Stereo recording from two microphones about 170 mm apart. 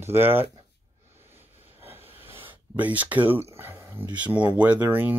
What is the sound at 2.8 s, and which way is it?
Speech, 10° right (ahead or behind).